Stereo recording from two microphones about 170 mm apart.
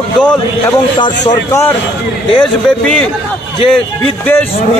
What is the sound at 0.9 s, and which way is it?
Speech, 25° left (ahead or behind).